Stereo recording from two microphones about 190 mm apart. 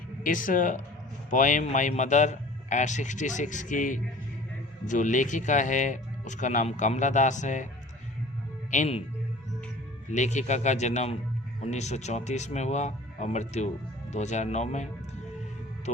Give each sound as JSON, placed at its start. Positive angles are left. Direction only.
{"t": 0.2, "sound": "speech", "side_deg": 45}
{"t": 8.7, "sound": "speech", "side_deg": 35}
{"t": 10.1, "sound": "speech", "side_deg": 40}